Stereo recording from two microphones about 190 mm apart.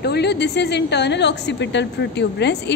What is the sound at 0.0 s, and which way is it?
A woman's voice, 60° left (ahead or behind).